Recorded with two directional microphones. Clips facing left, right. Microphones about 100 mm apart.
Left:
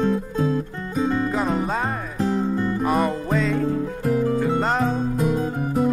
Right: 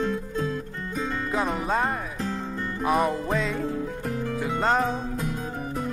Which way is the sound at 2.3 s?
25° left (ahead or behind).